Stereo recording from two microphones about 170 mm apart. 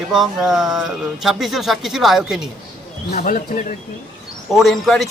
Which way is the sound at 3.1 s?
55° left (ahead or behind).